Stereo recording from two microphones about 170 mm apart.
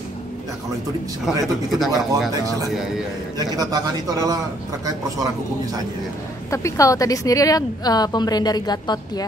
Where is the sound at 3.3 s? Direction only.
20° right (ahead or behind).